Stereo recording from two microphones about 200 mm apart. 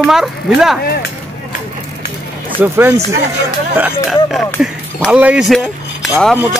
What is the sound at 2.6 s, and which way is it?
Speech, 5° right (ahead or behind).